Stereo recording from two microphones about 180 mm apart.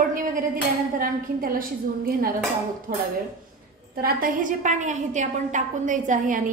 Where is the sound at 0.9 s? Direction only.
50° right (ahead or behind).